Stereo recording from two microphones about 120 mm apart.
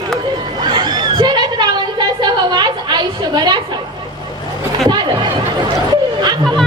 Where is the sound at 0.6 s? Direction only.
40° right (ahead or behind).